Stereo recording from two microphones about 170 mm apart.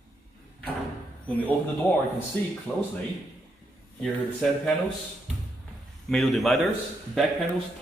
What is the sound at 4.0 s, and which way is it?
Speech, 5° left (ahead or behind).